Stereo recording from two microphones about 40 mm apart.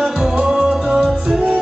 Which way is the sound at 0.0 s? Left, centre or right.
Centre.